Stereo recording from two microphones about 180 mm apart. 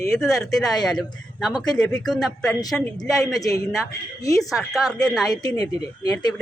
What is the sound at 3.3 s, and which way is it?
Speech, 20° left (ahead or behind).